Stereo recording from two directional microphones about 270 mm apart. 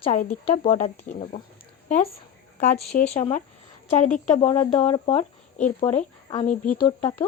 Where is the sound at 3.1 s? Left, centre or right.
Left.